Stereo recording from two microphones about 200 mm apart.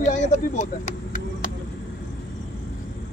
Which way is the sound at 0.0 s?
35° left (ahead or behind).